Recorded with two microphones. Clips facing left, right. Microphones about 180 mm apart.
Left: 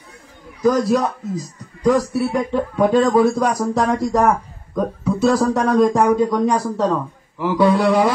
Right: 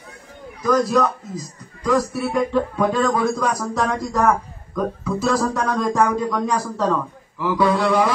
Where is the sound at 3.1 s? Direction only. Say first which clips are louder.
Left 5 dB; 30° left (ahead or behind).